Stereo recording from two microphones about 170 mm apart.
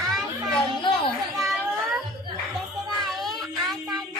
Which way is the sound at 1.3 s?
Centre (ahead or behind).